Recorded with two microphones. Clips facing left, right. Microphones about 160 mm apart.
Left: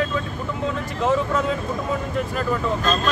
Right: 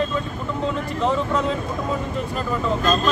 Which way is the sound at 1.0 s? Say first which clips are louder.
Left 1 dB; 5° left (ahead or behind).